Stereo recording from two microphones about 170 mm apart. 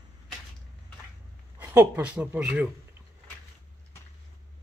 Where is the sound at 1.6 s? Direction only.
10° right (ahead or behind).